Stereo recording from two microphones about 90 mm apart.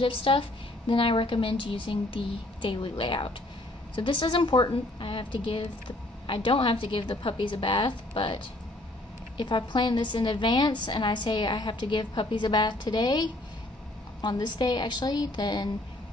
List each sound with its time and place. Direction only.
0.0 s a woman's voice: 80° left
9.4 s a woman's voice: 60° left (ahead or behind)